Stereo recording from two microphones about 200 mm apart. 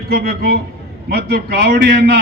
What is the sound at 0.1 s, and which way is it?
A man's voice, 50° right (ahead or behind).